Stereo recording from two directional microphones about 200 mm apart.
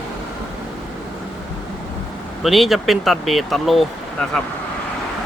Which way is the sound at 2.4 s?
Centre (ahead or behind).